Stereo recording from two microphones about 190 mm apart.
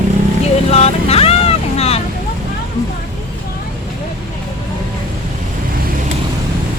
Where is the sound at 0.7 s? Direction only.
35° left (ahead or behind).